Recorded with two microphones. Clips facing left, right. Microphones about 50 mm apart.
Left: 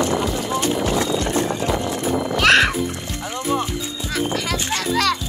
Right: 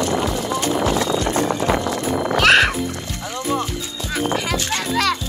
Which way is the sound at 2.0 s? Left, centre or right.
Right.